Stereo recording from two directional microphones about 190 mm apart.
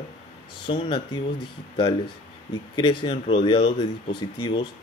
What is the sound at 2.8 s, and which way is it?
Speech, 25° left (ahead or behind).